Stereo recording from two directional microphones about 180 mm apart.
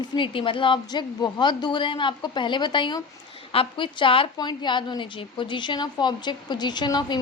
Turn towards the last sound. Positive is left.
turn(degrees=25)  # may be behind; listen again after turning